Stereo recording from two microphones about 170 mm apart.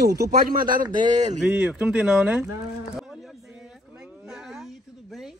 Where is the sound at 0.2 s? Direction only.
60° right (ahead or behind).